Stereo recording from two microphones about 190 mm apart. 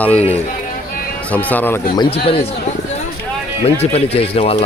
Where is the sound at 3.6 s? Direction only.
30° left (ahead or behind).